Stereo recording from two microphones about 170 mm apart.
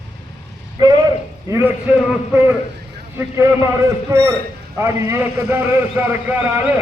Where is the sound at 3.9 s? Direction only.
15° right (ahead or behind).